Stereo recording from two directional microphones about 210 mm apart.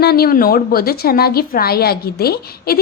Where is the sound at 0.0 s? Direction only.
50° left (ahead or behind).